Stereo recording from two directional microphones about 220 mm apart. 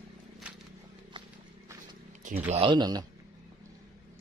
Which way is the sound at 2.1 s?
35° right (ahead or behind).